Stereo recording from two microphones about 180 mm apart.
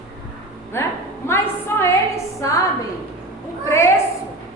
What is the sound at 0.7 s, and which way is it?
A woman's voice, 15° left (ahead or behind).